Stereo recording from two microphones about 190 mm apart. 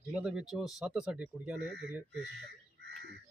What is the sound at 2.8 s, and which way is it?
Frog, 60° right (ahead or behind).